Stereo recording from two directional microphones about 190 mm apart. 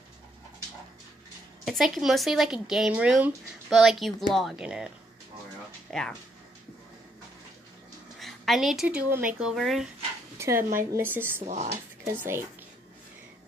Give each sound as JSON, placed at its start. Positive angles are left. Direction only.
{"t": 1.6, "sound": "speech", "side_deg": 0}
{"t": 8.2, "sound": "speech", "side_deg": 0}
{"t": 10.3, "sound": "speech", "side_deg": -15}
{"t": 10.6, "sound": "speech", "side_deg": -45}
{"t": 11.0, "sound": "speech", "side_deg": -10}
{"t": 11.4, "sound": "speech", "side_deg": -35}
{"t": 12.0, "sound": "speech", "side_deg": -10}